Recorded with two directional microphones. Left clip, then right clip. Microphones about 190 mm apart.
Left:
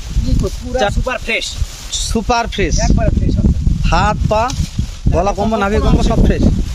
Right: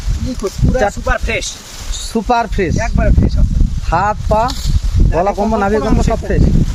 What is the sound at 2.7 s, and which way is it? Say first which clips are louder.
Speech: even; 20° right (ahead or behind).